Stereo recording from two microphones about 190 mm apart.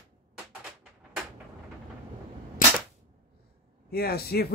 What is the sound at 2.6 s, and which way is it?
Cap gun, 45° left (ahead or behind).